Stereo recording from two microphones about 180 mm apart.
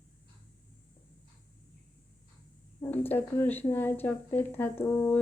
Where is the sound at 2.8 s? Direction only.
10° left (ahead or behind).